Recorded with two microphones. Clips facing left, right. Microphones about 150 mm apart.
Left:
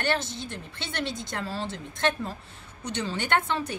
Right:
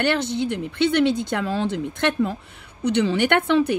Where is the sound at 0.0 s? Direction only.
65° right (ahead or behind).